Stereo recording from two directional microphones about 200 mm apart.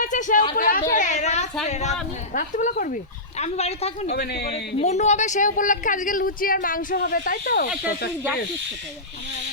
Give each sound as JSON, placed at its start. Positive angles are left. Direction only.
{"t": 0.0, "sound": "a sound", "side_deg": 40}
{"t": 1.6, "sound": "speech", "side_deg": 35}
{"t": 4.1, "sound": "a man's voice", "side_deg": 55}
{"t": 4.8, "sound": "speech", "side_deg": 35}